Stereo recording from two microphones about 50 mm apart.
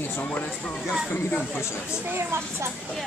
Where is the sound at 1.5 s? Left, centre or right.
Left.